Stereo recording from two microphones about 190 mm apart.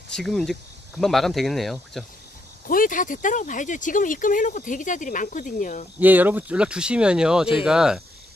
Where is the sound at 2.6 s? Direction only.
45° left (ahead or behind).